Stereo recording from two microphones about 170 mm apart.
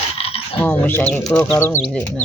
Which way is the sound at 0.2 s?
35° left (ahead or behind).